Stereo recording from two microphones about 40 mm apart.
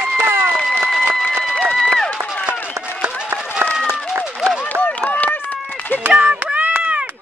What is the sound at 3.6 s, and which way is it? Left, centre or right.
Run, right.